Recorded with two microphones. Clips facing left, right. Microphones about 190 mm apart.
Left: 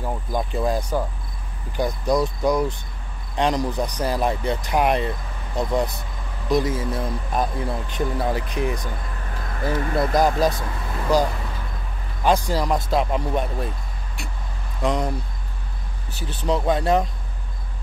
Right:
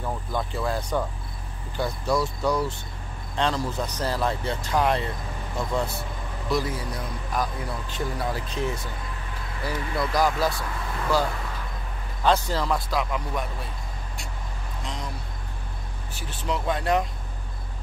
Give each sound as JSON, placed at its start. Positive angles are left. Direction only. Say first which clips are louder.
{"t": 0.0, "sound": "speech", "louder": "left 3 dB", "side_deg": 15}
{"t": 9.6, "sound": "speech", "louder": "left 6 dB", "side_deg": 50}
{"t": 11.1, "sound": "speech", "louder": "left 5 dB", "side_deg": 15}
{"t": 13.0, "sound": "speech", "louder": "left 6 dB", "side_deg": 30}
{"t": 14.8, "sound": "speech", "louder": "left 13 dB", "side_deg": 60}
{"t": 16.2, "sound": "speech", "louder": "left 6 dB", "side_deg": 35}